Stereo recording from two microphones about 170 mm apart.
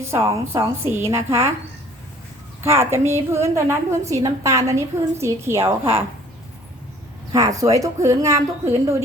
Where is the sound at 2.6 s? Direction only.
15° right (ahead or behind).